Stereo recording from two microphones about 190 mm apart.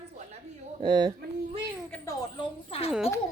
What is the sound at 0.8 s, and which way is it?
Speech, 20° right (ahead or behind).